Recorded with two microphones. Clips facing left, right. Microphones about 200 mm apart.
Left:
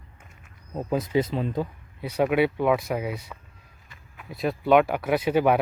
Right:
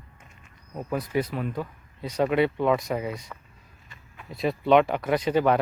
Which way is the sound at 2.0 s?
10° left (ahead or behind).